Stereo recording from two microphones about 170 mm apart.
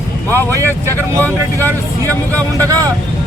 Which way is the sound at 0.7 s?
10° left (ahead or behind).